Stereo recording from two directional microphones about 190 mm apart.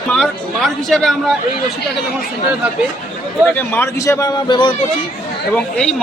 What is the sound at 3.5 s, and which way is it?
Speech, 10° left (ahead or behind).